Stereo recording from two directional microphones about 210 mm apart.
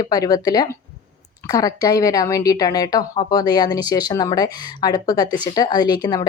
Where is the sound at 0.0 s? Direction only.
20° left (ahead or behind).